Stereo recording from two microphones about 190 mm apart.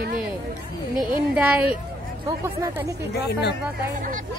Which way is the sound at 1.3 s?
5° right (ahead or behind).